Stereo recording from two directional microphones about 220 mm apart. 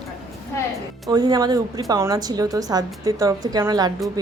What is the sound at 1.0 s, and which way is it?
A woman's voice, 15° right (ahead or behind).